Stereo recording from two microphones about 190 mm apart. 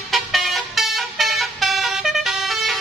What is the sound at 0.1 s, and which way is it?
Vehicle, centre (ahead or behind).